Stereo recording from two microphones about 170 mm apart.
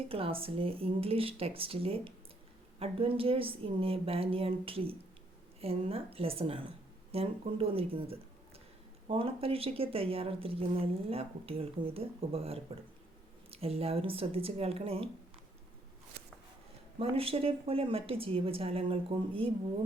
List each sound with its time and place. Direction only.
0.1 s speech: 35° right (ahead or behind)
17.0 s speech: 35° right (ahead or behind)